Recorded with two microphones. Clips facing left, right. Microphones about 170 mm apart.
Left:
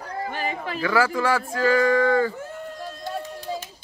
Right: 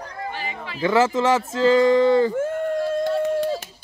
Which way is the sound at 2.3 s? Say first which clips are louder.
Right 12 dB; 50° right (ahead or behind).